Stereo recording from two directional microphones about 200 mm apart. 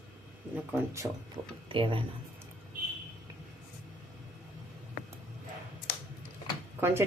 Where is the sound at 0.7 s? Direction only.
15° right (ahead or behind).